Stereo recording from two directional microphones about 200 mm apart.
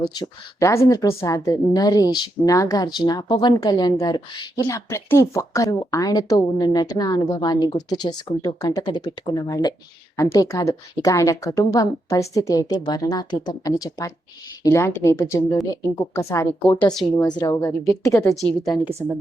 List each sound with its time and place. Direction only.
0.1 s a woman's voice: 20° left (ahead or behind)
18.9 s speech: 10° right (ahead or behind)